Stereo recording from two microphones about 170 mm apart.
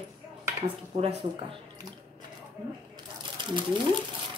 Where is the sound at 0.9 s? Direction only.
35° right (ahead or behind).